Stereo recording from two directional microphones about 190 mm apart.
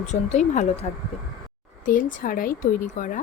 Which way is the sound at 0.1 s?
40° left (ahead or behind).